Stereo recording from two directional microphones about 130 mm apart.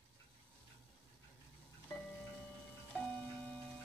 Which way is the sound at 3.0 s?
5° left (ahead or behind).